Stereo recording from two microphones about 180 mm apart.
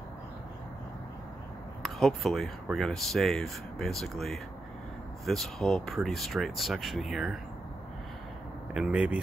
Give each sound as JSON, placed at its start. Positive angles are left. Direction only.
{"t": 1.8, "sound": "speech", "side_deg": 0}
{"t": 8.7, "sound": "speech", "side_deg": -5}